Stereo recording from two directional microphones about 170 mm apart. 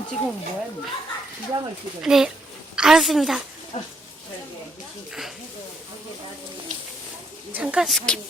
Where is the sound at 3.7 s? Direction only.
35° left (ahead or behind).